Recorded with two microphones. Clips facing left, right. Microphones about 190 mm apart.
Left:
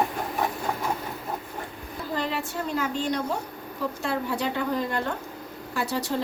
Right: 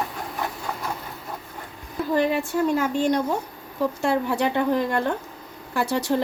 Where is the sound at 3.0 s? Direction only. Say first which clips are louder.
Right 5 dB; 50° right (ahead or behind).